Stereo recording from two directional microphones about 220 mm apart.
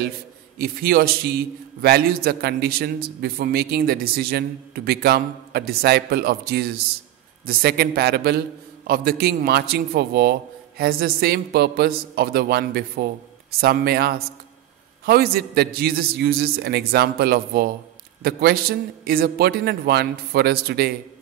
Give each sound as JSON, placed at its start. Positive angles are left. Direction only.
{"t": 0.6, "sound": "a man's voice", "side_deg": -45}